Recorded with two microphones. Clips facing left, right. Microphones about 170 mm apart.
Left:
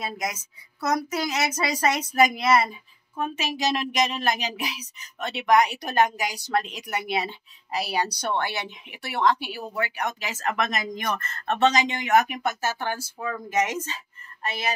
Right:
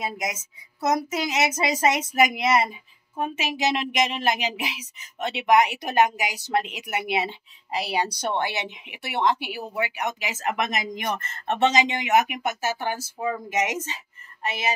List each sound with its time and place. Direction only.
0.0 s speech: 20° right (ahead or behind)